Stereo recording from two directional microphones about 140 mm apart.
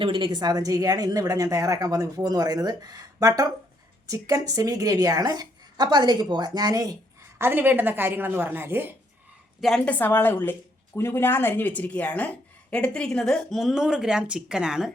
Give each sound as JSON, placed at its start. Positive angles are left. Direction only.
{"t": 0.0, "sound": "a woman's voice", "side_deg": -35}
{"t": 7.3, "sound": "a woman's voice", "side_deg": -15}
{"t": 9.6, "sound": "a woman's voice", "side_deg": 5}